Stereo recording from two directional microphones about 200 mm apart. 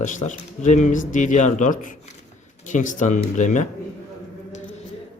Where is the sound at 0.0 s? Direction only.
40° left (ahead or behind).